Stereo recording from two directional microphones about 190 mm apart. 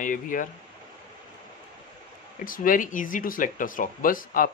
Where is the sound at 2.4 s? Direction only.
45° left (ahead or behind).